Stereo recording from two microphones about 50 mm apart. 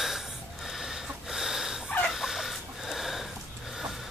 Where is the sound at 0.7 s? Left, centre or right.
Centre.